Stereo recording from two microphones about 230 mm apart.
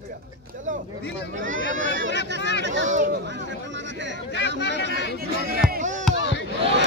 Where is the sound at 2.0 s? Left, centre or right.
Right.